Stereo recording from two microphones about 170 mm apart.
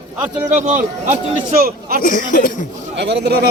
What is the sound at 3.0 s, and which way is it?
Speech, 85° right.